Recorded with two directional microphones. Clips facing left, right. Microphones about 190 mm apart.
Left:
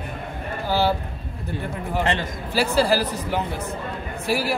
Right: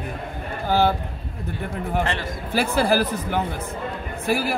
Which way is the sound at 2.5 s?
55° right (ahead or behind).